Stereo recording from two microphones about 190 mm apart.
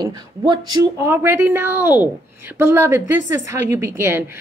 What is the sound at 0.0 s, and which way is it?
A woman's voice, 20° right (ahead or behind).